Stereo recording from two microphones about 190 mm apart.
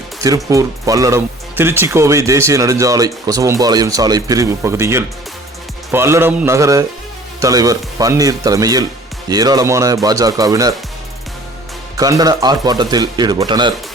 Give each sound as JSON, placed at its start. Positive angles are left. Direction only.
{"t": 0.5, "sound": "speech", "side_deg": -15}
{"t": 11.9, "sound": "speech", "side_deg": -20}